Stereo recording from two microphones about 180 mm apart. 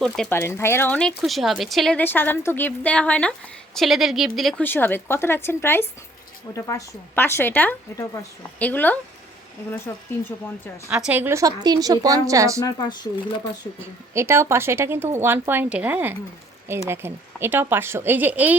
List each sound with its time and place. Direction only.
0.0 s speech: 5° left (ahead or behind)
4.6 s speech: 10° left (ahead or behind)
10.8 s speech: 5° right (ahead or behind)
12.6 s speech: 25° left (ahead or behind)
14.1 s speech: 15° right (ahead or behind)